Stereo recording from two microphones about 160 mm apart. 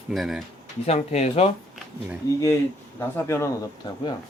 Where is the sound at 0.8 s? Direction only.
45° left (ahead or behind).